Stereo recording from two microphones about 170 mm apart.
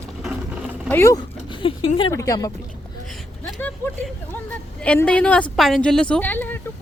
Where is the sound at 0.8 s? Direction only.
15° left (ahead or behind).